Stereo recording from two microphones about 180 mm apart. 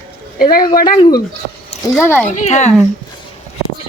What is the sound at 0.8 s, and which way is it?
Speech, 50° left (ahead or behind).